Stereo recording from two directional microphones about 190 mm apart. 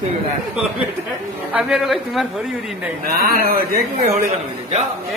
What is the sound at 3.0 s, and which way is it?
Speech, 55° right (ahead or behind).